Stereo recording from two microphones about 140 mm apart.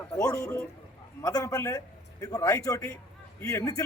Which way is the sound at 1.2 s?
25° left (ahead or behind).